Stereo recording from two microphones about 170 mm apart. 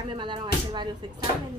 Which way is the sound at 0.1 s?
25° right (ahead or behind).